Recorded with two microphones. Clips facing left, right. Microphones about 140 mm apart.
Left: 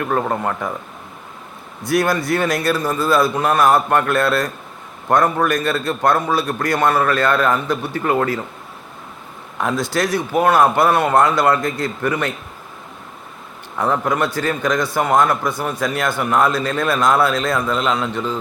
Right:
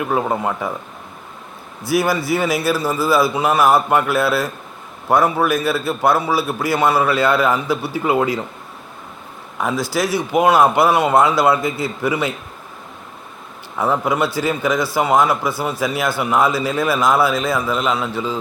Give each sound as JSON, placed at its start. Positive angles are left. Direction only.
{"t": 0.0, "sound": "a man's voice", "side_deg": -5}
{"t": 1.8, "sound": "a man's voice", "side_deg": -5}
{"t": 9.6, "sound": "a man's voice", "side_deg": 0}
{"t": 13.7, "sound": "a man's voice", "side_deg": -5}